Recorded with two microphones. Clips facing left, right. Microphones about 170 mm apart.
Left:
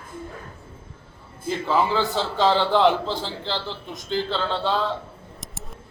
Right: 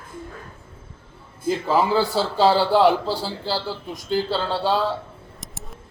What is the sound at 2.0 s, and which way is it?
Speech, 35° right (ahead or behind).